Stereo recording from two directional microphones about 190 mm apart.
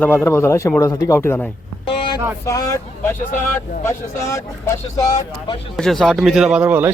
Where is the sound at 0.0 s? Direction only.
10° left (ahead or behind).